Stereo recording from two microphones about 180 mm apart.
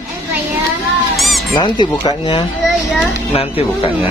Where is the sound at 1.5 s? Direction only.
25° left (ahead or behind).